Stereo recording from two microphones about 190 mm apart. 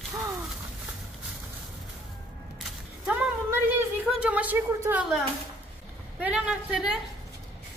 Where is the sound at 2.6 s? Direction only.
Centre (ahead or behind).